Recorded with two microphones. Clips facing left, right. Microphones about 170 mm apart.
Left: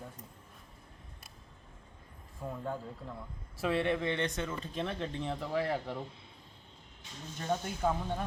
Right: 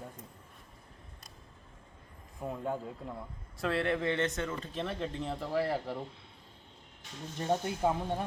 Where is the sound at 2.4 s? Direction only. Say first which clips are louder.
Right 3 dB; 10° right (ahead or behind).